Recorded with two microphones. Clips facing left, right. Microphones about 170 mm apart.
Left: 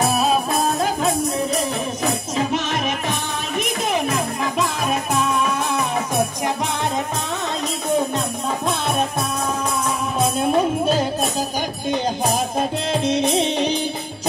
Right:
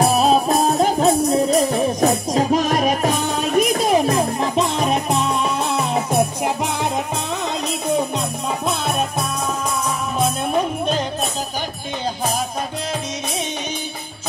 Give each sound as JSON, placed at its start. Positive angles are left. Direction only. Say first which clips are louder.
{"t": 0.2, "sound": "music", "louder": "right 4 dB", "side_deg": -30}